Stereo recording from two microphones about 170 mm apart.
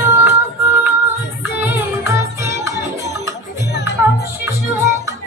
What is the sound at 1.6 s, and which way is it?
Music, 15° right (ahead or behind).